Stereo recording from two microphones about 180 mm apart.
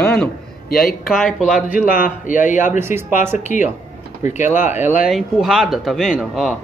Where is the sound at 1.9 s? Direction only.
50° left (ahead or behind).